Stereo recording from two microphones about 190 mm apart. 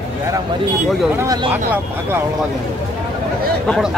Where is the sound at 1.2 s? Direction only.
20° right (ahead or behind).